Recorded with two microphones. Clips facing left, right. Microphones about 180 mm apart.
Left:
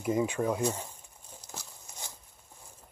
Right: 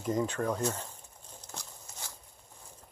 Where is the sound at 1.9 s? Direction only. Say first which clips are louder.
Left 2 dB; 15° left (ahead or behind).